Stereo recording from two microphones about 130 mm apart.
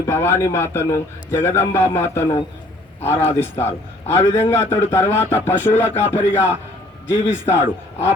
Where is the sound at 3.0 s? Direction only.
20° left (ahead or behind).